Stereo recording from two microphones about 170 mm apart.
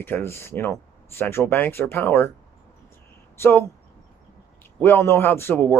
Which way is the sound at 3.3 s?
15° left (ahead or behind).